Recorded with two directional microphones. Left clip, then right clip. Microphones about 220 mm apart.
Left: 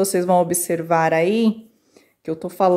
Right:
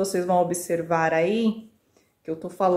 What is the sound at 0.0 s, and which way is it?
A woman's voice, 40° left (ahead or behind).